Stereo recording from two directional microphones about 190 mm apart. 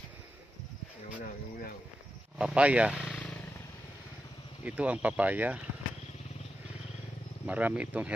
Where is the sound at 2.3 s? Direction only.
5° right (ahead or behind).